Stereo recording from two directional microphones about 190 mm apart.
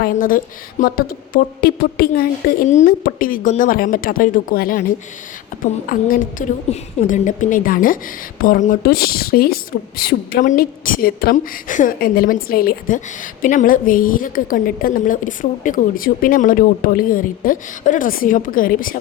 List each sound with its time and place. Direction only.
0.0 s a woman's voice: 45° left (ahead or behind)
5.8 s a woman's voice: 45° left (ahead or behind)